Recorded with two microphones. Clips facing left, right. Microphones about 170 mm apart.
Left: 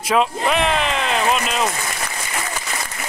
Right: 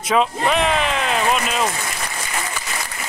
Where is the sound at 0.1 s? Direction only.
Centre (ahead or behind).